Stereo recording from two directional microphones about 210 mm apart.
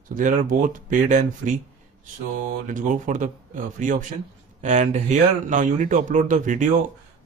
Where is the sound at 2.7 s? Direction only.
40° right (ahead or behind).